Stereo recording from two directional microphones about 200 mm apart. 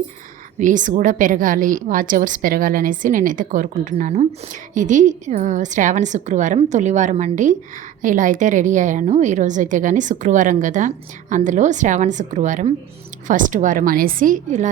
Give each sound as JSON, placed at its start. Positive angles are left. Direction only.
{"t": 0.6, "sound": "a woman's voice", "side_deg": -40}